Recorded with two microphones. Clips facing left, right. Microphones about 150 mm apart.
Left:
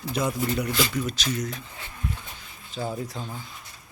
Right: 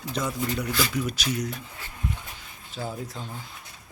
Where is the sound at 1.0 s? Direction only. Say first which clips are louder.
Even; 10° right (ahead or behind).